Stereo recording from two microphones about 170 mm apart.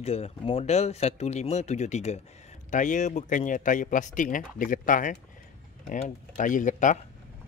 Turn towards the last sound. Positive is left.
turn(degrees=45)  # may be behind; listen again after turning